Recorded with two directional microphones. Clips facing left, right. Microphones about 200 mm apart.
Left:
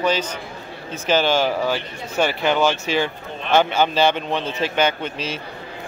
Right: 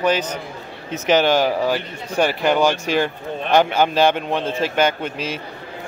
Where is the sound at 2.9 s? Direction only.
50° right (ahead or behind).